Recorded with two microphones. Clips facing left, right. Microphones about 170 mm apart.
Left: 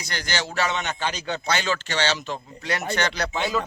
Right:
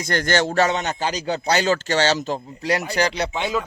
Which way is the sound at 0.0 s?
50° right (ahead or behind).